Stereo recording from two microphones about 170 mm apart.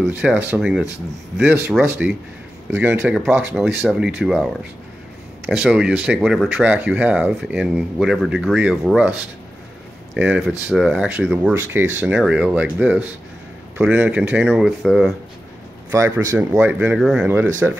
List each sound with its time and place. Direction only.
0.2 s speech: 5° right (ahead or behind)
5.5 s speech: 5° right (ahead or behind)
15.9 s a man's voice: 20° right (ahead or behind)
16.3 s speech: 5° right (ahead or behind)